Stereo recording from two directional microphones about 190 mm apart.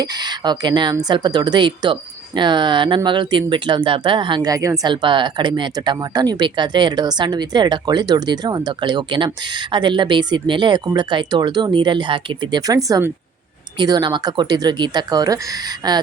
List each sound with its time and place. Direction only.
0.0 s speech: 20° right (ahead or behind)